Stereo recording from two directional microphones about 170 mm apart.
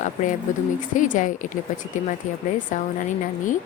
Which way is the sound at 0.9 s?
50° left (ahead or behind).